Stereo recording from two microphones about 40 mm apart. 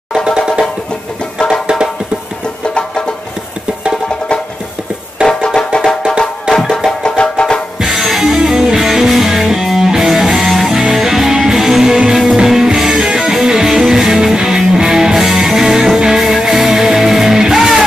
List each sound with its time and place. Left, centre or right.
0.1 s music: centre
5.3 s music: centre
6.5 s music: centre
7.0 s music: left
7.8 s music: centre